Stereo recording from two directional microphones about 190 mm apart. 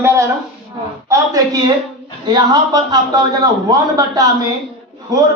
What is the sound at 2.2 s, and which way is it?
A man's voice, 20° right (ahead or behind).